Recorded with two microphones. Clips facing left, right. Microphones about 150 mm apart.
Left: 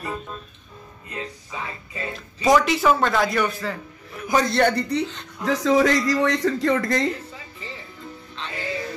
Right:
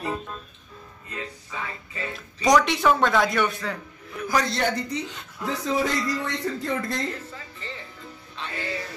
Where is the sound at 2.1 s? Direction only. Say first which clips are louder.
Left 1 dB; centre (ahead or behind).